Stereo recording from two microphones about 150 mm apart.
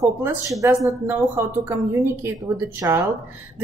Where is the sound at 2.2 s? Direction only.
20° right (ahead or behind).